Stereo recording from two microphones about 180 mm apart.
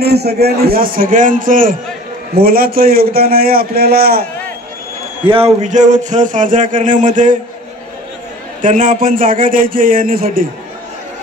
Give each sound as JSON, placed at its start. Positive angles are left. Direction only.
{"t": 0.0, "sound": "a man's voice", "side_deg": -65}
{"t": 5.2, "sound": "a man's voice", "side_deg": -30}
{"t": 8.5, "sound": "a man's voice", "side_deg": -45}